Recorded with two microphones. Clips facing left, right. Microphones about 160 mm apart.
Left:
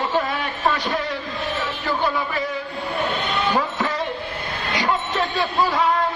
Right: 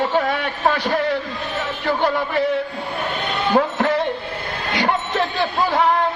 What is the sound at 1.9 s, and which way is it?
Music, 60° right (ahead or behind).